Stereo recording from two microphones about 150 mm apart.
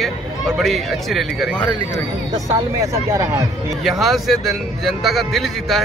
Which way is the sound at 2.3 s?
20° right (ahead or behind).